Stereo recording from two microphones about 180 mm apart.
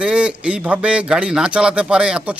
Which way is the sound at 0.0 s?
5° right (ahead or behind).